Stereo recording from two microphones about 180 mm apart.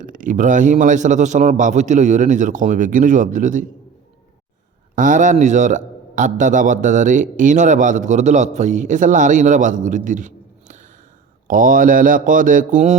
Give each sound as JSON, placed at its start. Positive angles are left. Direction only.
{"t": 0.0, "sound": "a man's voice", "side_deg": -45}
{"t": 4.9, "sound": "a man's voice", "side_deg": -45}